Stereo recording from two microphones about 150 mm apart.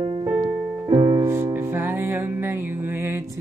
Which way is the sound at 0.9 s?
35° right (ahead or behind).